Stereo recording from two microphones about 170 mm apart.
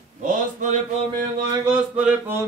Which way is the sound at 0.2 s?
50° right (ahead or behind).